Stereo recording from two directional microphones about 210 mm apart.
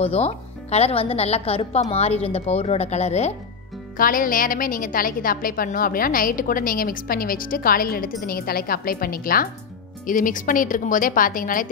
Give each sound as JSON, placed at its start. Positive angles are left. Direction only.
{"t": 0.0, "sound": "a woman's voice", "side_deg": 30}